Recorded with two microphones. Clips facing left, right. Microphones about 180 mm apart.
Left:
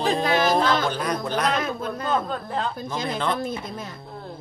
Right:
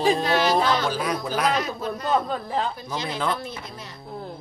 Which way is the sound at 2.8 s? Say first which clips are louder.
Left 1 dB; 50° left (ahead or behind).